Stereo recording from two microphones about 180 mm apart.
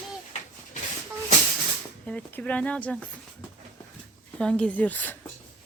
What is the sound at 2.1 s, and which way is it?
Speech, 5° left (ahead or behind).